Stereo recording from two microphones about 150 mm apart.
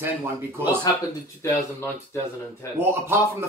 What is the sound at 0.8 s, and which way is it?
Speech, 20° left (ahead or behind).